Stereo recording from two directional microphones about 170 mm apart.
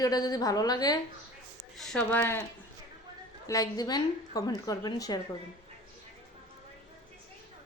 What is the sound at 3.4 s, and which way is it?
Speech, 20° left (ahead or behind).